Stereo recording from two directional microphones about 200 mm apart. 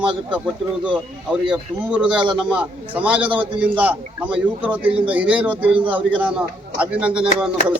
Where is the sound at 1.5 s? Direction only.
5° right (ahead or behind).